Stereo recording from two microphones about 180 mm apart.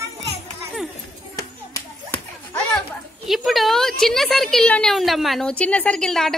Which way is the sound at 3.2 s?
Centre (ahead or behind).